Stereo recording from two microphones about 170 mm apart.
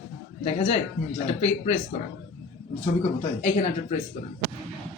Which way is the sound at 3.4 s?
45° left (ahead or behind).